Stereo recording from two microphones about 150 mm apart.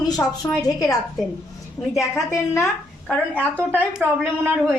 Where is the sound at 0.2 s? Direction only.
15° left (ahead or behind).